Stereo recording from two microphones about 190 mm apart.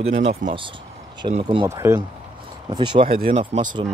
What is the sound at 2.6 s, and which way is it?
Speech, 25° right (ahead or behind).